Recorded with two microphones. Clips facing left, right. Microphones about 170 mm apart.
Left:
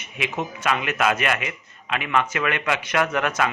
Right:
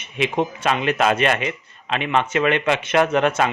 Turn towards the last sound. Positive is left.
turn(degrees=-25)  # may be behind; listen again after turning